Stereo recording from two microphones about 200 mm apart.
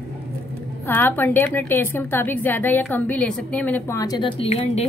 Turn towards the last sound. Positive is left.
turn(degrees=30)  # may be behind; listen again after turning